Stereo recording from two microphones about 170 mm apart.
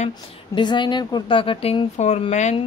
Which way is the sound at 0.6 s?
25° left (ahead or behind).